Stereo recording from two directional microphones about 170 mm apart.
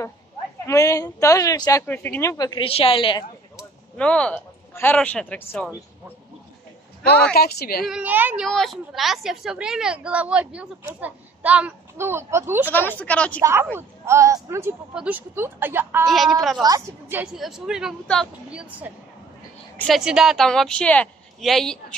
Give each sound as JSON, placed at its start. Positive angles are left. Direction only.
{"t": 0.7, "sound": "a man's voice", "side_deg": 20}
{"t": 3.9, "sound": "speech", "side_deg": 5}
{"t": 7.1, "sound": "a woman's voice", "side_deg": 5}
{"t": 7.3, "sound": "a woman's voice", "side_deg": 65}
{"t": 7.8, "sound": "a woman's voice", "side_deg": -5}
{"t": 8.5, "sound": "a woman's voice", "side_deg": 0}
{"t": 12.7, "sound": "a woman's voice", "side_deg": 10}
{"t": 13.4, "sound": "a woman's voice", "side_deg": -15}
{"t": 16.1, "sound": "speech", "side_deg": 0}
{"t": 16.6, "sound": "a woman's voice", "side_deg": -20}
{"t": 17.2, "sound": "speech", "side_deg": -5}
{"t": 19.8, "sound": "speech", "side_deg": 0}